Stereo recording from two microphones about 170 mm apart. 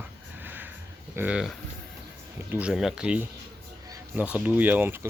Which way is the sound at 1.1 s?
5° right (ahead or behind).